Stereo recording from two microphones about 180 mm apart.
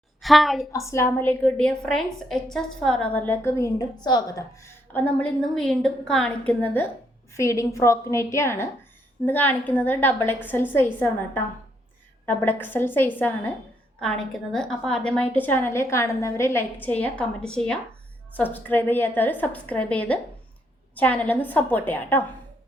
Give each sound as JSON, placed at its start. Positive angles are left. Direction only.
{"t": 0.2, "sound": "a woman's voice", "side_deg": 0}
{"t": 0.7, "sound": "a woman's voice", "side_deg": 15}